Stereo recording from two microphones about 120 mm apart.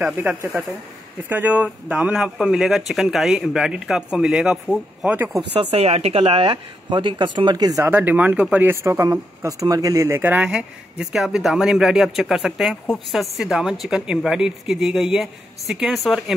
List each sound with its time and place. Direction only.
0.0 s speech: 15° right (ahead or behind)
5.5 s speech: 55° right (ahead or behind); by 7.8 s 35° right (ahead or behind)
7.8 s speech: 15° right (ahead or behind)
8.8 s speech: 25° right (ahead or behind)
10.4 s speech: 5° right (ahead or behind)